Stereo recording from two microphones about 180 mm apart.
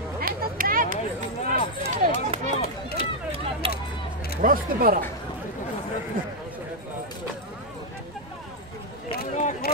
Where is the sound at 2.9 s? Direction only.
35° right (ahead or behind).